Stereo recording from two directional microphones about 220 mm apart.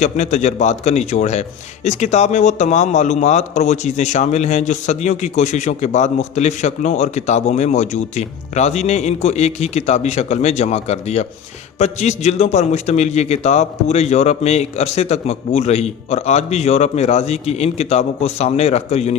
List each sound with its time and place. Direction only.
0.0 s a man's voice: 30° left (ahead or behind)